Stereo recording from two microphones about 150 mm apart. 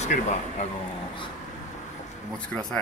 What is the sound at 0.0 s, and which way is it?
Speech, 50° left (ahead or behind).